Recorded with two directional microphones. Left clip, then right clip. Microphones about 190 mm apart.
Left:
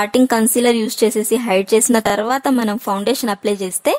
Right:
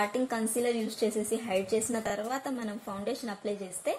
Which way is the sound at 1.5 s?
45° left (ahead or behind).